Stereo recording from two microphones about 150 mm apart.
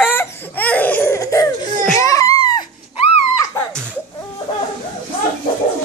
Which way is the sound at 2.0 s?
20° left (ahead or behind).